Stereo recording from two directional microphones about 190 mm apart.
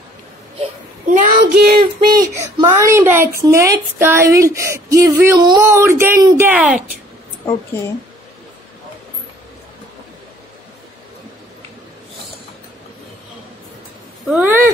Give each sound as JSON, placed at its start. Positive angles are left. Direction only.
{"t": 1.4, "sound": "child singing", "side_deg": -55}
{"t": 2.2, "sound": "speech", "side_deg": -15}
{"t": 7.4, "sound": "speech", "side_deg": 15}
{"t": 14.2, "sound": "speech", "side_deg": -10}